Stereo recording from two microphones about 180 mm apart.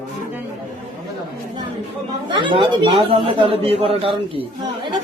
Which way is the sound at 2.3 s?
25° right (ahead or behind).